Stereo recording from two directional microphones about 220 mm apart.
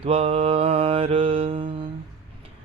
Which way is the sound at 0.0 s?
25° right (ahead or behind).